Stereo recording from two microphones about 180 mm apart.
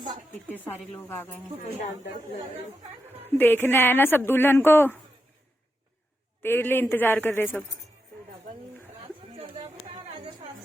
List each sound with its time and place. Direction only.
0.6 s speech: 10° left (ahead or behind)
3.3 s speech: 10° left (ahead or behind)
6.4 s speech: 10° left (ahead or behind)
9.3 s a sound: 35° right (ahead or behind)